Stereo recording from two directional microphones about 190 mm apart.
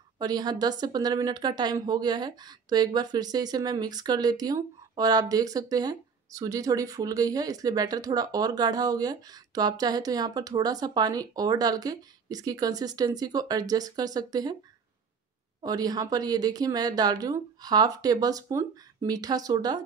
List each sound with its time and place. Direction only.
0.2 s a woman's voice: 20° right (ahead or behind)
15.6 s a woman's voice: 20° right (ahead or behind)